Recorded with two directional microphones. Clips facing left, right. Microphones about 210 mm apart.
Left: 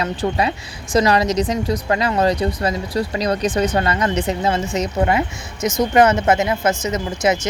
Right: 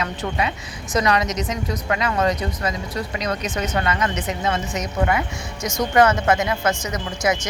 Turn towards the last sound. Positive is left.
turn(degrees=25)  # may be behind; listen again after turning